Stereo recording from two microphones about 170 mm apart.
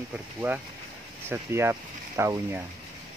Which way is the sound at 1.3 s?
15° right (ahead or behind).